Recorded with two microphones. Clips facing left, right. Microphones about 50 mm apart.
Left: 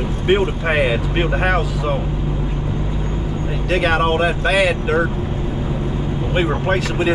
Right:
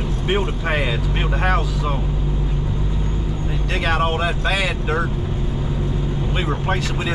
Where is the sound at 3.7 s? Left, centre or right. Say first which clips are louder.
Left 4 dB; centre.